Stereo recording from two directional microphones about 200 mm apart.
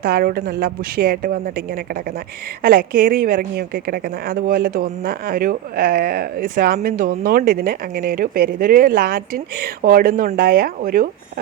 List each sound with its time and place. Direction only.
0.0 s a woman's voice: 50° right (ahead or behind)
2.6 s a woman's voice: 45° right (ahead or behind)